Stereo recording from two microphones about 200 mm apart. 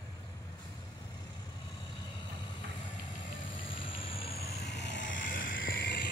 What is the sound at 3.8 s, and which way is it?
Vehicle, 25° left (ahead or behind).